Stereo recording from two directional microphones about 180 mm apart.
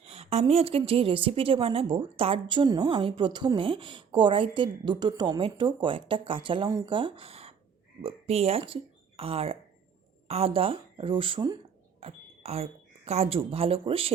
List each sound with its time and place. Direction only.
0.0 s a woman's voice: 35° right (ahead or behind)
11.9 s a sound: 35° right (ahead or behind)
13.1 s speech: 35° right (ahead or behind)